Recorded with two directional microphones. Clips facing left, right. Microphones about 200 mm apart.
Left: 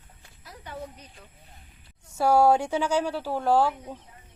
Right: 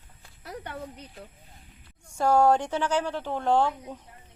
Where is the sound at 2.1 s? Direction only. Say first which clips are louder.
Left 1 dB; 10° left (ahead or behind).